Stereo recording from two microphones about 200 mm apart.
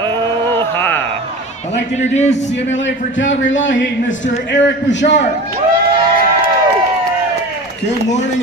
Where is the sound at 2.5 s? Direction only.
65° left (ahead or behind).